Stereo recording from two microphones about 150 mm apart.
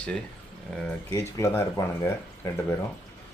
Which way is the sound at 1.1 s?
20° left (ahead or behind).